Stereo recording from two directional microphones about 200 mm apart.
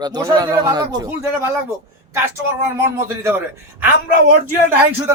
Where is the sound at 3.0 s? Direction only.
15° right (ahead or behind).